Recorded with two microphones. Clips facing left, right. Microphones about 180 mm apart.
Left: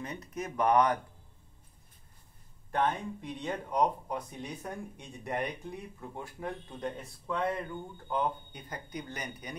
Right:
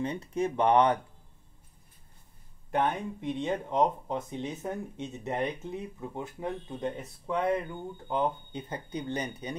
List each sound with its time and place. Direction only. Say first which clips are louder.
0.0 s speech: right 8 dB; 30° right (ahead or behind)
2.7 s speech: right 2 dB; 20° right (ahead or behind)